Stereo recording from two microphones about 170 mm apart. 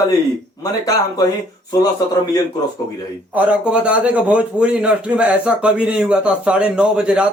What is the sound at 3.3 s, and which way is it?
A man's voice, 5° right (ahead or behind).